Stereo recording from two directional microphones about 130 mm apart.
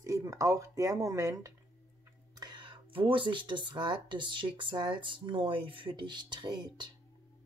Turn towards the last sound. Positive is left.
turn(degrees=-35)  # may be behind; listen again after turning